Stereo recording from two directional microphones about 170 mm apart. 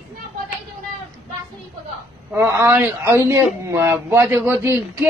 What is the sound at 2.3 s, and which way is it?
A man's voice, 15° right (ahead or behind).